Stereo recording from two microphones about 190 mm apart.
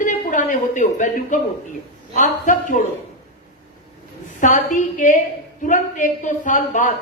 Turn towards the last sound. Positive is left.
turn(degrees=40)  # may be behind; listen again after turning